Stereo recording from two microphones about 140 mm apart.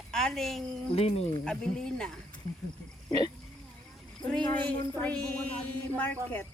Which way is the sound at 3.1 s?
30° left (ahead or behind).